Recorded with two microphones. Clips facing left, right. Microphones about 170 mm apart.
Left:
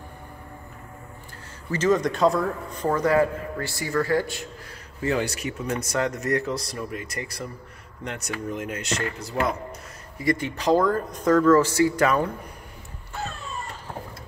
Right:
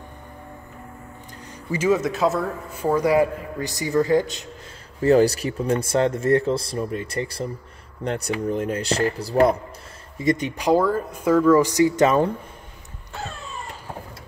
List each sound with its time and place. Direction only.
1.7 s a man's voice: 10° right (ahead or behind)
5.0 s speech: 35° right (ahead or behind)
10.1 s a man's voice: 20° right (ahead or behind)